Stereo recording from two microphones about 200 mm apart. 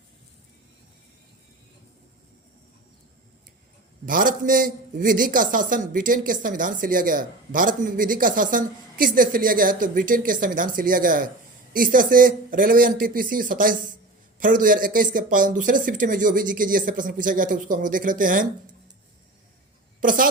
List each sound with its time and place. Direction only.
4.0 s a man's voice: 45° right (ahead or behind)
20.0 s a man's voice: 45° right (ahead or behind)